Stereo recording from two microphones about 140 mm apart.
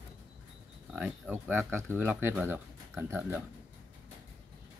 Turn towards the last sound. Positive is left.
turn(degrees=-15)  # may be behind; listen again after turning